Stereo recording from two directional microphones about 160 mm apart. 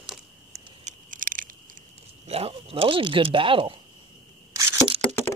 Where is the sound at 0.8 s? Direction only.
55° right (ahead or behind).